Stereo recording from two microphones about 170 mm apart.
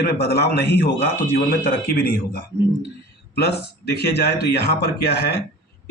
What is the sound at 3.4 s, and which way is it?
Speech, 75° left (ahead or behind).